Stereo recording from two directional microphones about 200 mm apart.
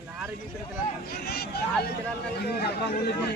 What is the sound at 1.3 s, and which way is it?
Hubbub, 50° left (ahead or behind).